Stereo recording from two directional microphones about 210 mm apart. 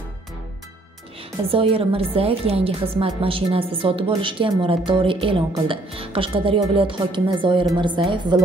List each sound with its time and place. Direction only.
1.5 s a woman's voice: 25° right (ahead or behind)